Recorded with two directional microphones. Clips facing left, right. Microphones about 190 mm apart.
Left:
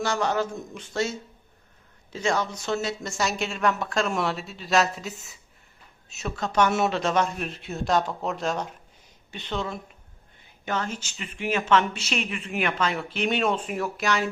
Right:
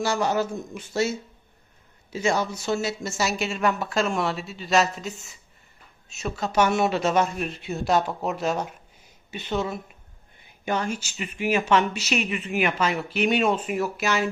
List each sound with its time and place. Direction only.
0.0 s speech: 10° right (ahead or behind)
2.1 s a woman's voice: 10° right (ahead or behind)